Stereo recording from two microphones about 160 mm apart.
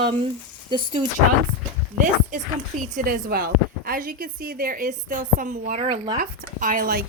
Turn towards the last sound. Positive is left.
turn(degrees=-65)  # may be behind; listen again after turning